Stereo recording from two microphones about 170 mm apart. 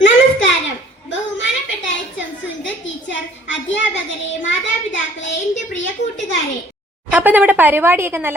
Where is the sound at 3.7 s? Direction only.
90° left.